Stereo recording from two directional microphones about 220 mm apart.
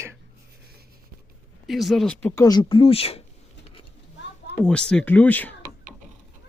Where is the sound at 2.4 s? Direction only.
20° left (ahead or behind).